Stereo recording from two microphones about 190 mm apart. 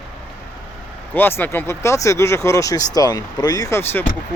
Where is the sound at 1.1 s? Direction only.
10° left (ahead or behind).